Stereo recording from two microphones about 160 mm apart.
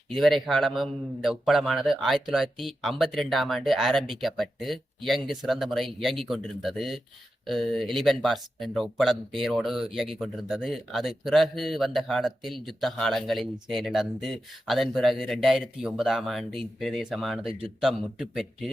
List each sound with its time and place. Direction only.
0.1 s speech: centre (ahead or behind)